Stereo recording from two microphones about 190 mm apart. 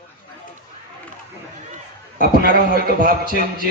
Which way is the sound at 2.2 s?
50° right (ahead or behind).